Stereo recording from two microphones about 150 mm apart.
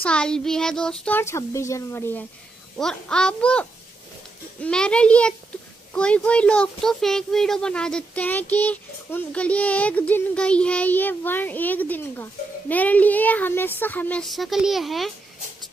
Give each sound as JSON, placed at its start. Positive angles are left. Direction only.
{"t": 0.0, "sound": "speech", "side_deg": 5}
{"t": 2.8, "sound": "a child's voice", "side_deg": 5}